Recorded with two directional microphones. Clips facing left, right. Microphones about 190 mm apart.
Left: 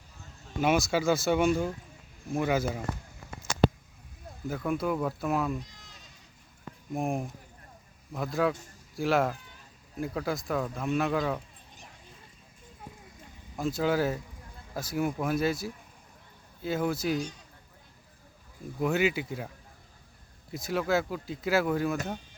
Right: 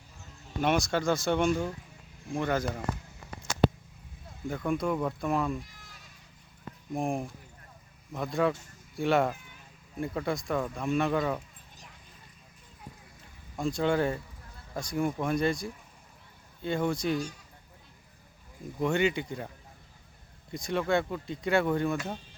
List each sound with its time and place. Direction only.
0.6 s speech: 5° left (ahead or behind)
4.4 s speech: 5° left (ahead or behind)
5.5 s bleat: 20° left (ahead or behind)
6.9 s speech: centre (ahead or behind)
13.6 s speech: 5° left (ahead or behind)
18.8 s speech: 5° left (ahead or behind)
20.5 s speech: 5° left (ahead or behind)